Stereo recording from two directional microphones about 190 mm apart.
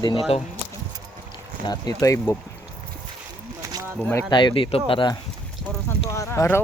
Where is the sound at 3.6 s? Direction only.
15° right (ahead or behind).